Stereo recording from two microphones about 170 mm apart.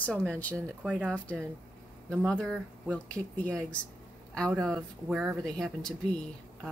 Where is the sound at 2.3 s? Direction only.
5° left (ahead or behind).